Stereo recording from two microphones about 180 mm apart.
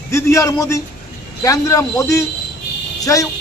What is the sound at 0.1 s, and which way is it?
A man's voice, 15° left (ahead or behind).